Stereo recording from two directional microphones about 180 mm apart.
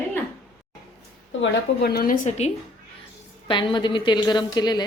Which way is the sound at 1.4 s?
60° left (ahead or behind).